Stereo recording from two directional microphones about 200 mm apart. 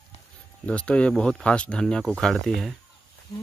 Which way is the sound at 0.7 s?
5° left (ahead or behind).